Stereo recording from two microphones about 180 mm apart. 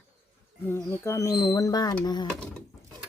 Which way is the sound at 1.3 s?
25° left (ahead or behind).